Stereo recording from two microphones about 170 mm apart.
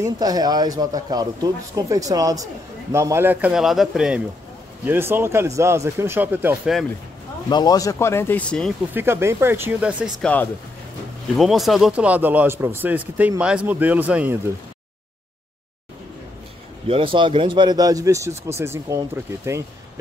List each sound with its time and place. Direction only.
0.0 s speech: 25° right (ahead or behind)
7.4 s speech: 25° left (ahead or behind); by 8.7 s 5° left (ahead or behind)
8.9 s speech: 15° right (ahead or behind)
10.2 s speech: 10° left (ahead or behind); by 14.4 s 10° right (ahead or behind)
16.8 s speech: 30° right (ahead or behind)